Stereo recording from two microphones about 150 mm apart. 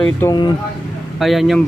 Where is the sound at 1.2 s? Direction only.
Centre (ahead or behind).